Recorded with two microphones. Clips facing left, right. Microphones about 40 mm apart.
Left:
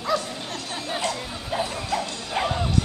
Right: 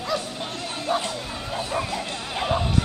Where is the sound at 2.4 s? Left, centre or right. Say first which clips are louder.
Left 3 dB; centre.